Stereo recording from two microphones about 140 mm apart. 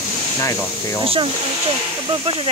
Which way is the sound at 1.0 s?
40° right (ahead or behind).